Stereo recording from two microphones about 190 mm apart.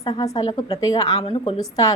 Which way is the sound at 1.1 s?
30° left (ahead or behind).